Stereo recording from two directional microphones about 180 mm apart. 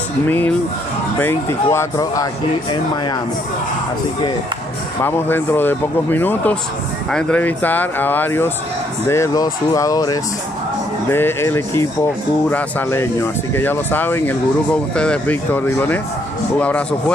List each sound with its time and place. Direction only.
0.3 s speech: 10° left (ahead or behind)
5.0 s speech: 10° left (ahead or behind)